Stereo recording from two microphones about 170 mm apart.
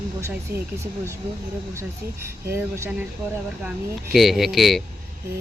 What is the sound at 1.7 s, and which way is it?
Speech, 15° right (ahead or behind).